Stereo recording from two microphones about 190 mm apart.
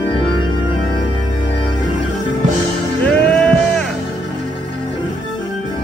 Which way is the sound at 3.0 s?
5° left (ahead or behind).